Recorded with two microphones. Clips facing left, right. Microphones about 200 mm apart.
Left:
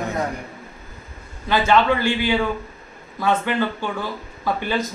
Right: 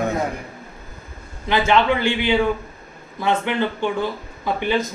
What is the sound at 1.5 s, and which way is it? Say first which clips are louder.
Speech: even; 20° right (ahead or behind).